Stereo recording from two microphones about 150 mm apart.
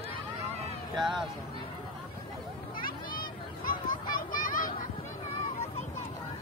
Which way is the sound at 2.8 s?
70° left (ahead or behind).